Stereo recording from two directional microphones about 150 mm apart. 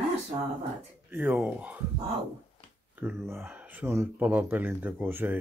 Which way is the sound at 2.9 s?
15° right (ahead or behind).